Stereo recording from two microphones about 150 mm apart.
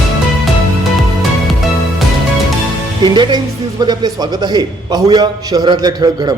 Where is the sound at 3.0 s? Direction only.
30° right (ahead or behind).